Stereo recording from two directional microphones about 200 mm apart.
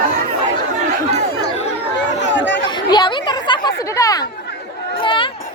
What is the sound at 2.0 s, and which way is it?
Chatter, 60° left (ahead or behind).